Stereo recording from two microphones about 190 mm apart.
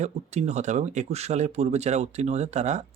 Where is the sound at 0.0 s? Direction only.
35° right (ahead or behind).